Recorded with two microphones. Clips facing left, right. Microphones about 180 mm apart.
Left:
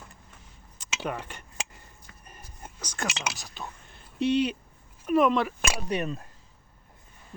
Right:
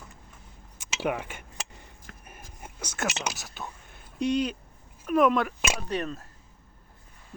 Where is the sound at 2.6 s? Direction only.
5° right (ahead or behind).